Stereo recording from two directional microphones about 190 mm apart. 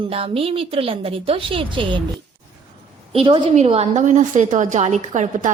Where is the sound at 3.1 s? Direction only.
30° right (ahead or behind).